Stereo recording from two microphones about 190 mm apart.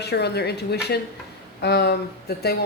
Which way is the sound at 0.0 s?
60° left (ahead or behind).